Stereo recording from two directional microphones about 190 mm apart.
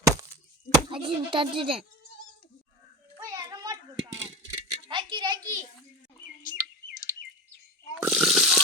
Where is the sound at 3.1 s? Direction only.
20° right (ahead or behind).